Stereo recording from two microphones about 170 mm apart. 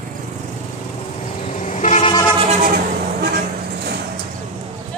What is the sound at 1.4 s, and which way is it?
Vehicle, 45° left (ahead or behind).